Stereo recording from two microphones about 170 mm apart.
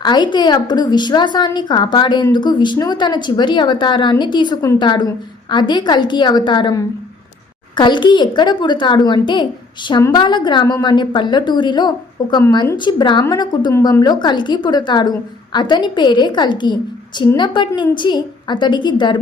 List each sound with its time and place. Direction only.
0.0 s a woman's voice: 25° left (ahead or behind)